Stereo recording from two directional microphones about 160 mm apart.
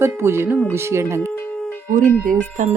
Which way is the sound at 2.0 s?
60° right (ahead or behind).